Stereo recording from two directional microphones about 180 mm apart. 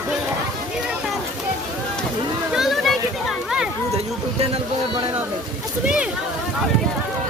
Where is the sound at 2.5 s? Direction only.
Centre (ahead or behind).